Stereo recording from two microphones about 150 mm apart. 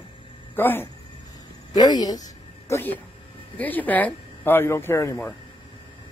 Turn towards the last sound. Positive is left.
turn(degrees=15)  # may be behind; listen again after turning